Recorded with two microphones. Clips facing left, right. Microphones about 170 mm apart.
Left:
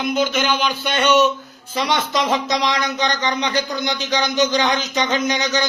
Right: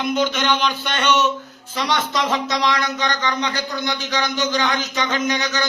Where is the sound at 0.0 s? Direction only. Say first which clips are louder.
Left 1 dB; 5° left (ahead or behind).